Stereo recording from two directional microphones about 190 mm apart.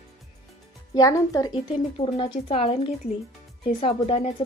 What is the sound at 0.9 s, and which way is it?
A woman's voice, 20° left (ahead or behind).